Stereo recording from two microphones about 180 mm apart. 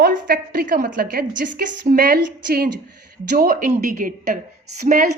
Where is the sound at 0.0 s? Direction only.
55° right (ahead or behind).